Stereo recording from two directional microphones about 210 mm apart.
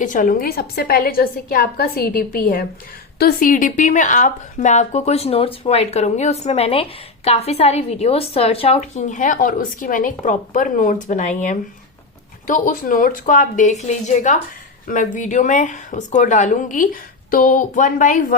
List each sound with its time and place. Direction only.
0.0 s a woman's voice: 40° left (ahead or behind)